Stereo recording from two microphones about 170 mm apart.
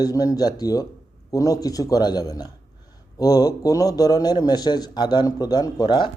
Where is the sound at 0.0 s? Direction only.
20° left (ahead or behind).